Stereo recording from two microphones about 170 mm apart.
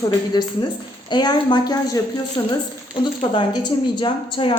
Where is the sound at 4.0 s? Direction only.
30° left (ahead or behind).